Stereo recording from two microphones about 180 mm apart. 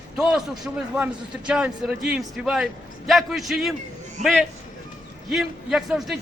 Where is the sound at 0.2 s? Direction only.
Centre (ahead or behind).